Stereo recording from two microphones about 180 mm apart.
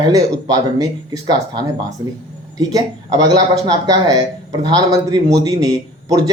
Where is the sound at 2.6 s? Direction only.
20° right (ahead or behind).